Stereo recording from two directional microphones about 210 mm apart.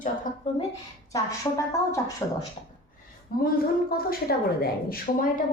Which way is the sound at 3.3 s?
45° left (ahead or behind).